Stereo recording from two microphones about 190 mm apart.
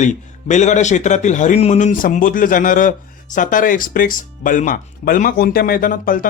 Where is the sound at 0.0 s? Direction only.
40° left (ahead or behind).